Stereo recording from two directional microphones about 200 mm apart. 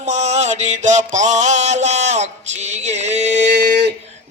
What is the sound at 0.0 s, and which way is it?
Mantra, 35° right (ahead or behind).